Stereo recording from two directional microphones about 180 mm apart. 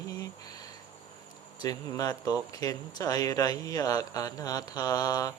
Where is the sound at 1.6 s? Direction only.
20° left (ahead or behind).